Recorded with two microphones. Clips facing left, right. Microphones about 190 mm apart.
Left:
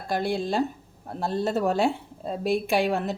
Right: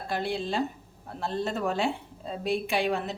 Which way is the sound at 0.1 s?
45° left (ahead or behind).